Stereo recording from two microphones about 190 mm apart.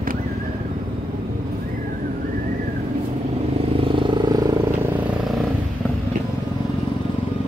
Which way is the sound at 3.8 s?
25° right (ahead or behind).